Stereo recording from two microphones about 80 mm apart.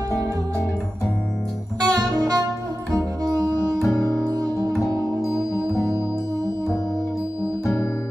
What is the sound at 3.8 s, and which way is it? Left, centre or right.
Music, left.